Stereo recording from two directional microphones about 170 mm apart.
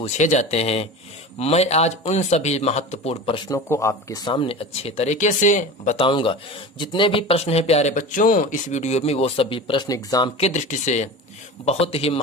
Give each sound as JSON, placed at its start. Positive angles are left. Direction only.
{"t": 0.0, "sound": "speech", "side_deg": 45}
{"t": 3.5, "sound": "speech", "side_deg": 20}
{"t": 6.0, "sound": "speech", "side_deg": 30}